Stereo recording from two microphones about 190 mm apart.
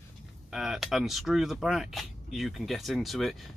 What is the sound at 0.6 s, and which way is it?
Speech, centre (ahead or behind).